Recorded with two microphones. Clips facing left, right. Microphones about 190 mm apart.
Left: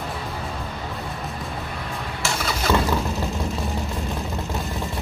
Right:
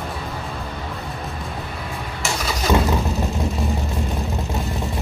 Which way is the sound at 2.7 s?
20° right (ahead or behind).